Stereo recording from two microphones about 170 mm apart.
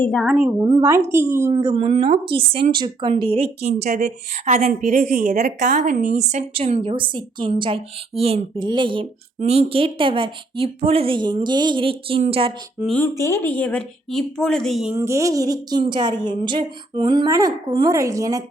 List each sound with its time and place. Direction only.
0.0 s speech: centre (ahead or behind)
0.6 s speech: 20° right (ahead or behind)
1.5 s a woman's voice: 35° right (ahead or behind)
3.8 s a woman's voice: 50° right (ahead or behind); by 12.5 s 35° right (ahead or behind)
12.8 s speech: 5° left (ahead or behind)
13.1 s speech: 15° left (ahead or behind); by 14.9 s centre (ahead or behind)
14.9 s speech: 15° right (ahead or behind)